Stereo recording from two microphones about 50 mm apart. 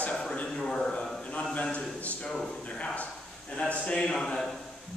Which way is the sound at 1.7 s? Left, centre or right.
Left.